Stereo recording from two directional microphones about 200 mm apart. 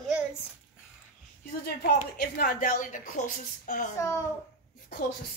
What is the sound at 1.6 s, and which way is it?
A woman's voice, 50° left (ahead or behind).